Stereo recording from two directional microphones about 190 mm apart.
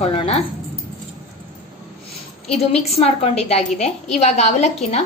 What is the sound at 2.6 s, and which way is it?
Speech, 35° left (ahead or behind).